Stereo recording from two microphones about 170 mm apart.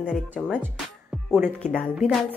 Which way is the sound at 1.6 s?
5° left (ahead or behind).